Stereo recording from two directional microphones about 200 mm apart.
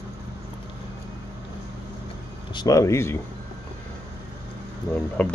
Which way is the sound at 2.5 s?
20° left (ahead or behind).